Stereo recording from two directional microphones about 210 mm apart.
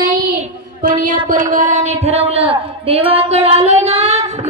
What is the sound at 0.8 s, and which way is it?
A man's voice, 40° right (ahead or behind).